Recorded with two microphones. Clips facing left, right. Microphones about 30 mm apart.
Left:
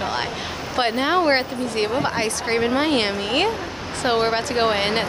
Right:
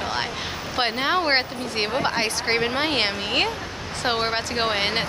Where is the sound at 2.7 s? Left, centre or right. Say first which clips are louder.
Left 3 dB; centre.